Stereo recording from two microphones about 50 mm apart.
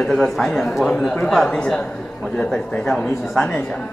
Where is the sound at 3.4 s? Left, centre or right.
Left.